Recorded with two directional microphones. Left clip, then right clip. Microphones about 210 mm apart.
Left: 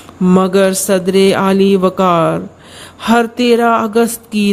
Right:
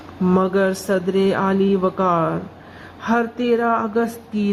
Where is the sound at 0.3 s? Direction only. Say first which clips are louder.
Left 7 dB; 40° left (ahead or behind).